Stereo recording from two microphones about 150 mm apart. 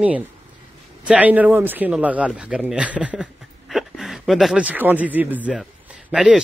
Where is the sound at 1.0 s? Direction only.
10° right (ahead or behind).